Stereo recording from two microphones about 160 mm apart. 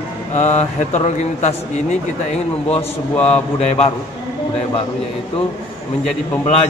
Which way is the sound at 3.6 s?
40° left (ahead or behind).